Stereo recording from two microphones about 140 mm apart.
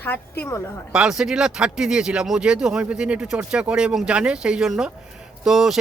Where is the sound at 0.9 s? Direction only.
5° right (ahead or behind).